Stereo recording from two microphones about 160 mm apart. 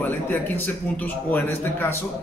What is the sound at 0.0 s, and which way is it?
A man's voice, 10° left (ahead or behind).